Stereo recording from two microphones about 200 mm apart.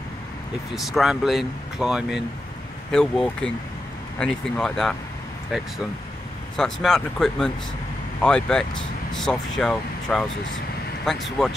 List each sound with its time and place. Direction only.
0.7 s speech: centre (ahead or behind)